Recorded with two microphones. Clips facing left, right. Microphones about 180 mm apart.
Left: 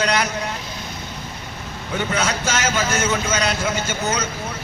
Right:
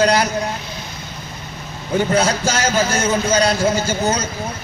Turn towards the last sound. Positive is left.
turn(degrees=-35)  # may be behind; listen again after turning